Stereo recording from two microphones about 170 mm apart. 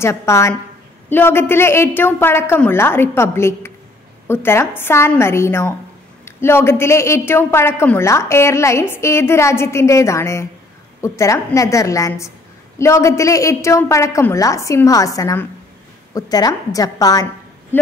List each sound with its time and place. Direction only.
0.0 s a man's voice: 15° left (ahead or behind)